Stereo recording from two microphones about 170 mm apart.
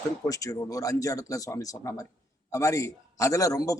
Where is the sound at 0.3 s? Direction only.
20° left (ahead or behind).